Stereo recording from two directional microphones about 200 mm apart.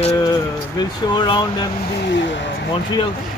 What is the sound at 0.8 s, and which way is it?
Speech, 20° left (ahead or behind).